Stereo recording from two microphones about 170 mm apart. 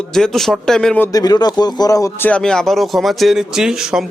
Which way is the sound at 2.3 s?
5° left (ahead or behind).